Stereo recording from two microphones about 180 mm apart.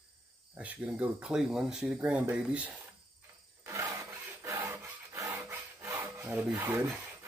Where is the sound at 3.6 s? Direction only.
15° right (ahead or behind).